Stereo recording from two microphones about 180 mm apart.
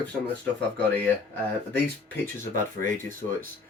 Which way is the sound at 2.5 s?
10° left (ahead or behind).